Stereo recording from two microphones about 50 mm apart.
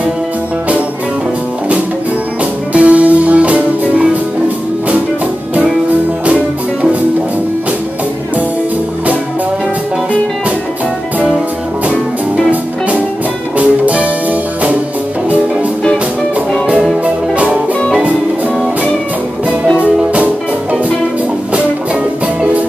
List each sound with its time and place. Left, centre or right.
2.7 s music: right
6.2 s music: right
13.6 s music: right
17.0 s music: right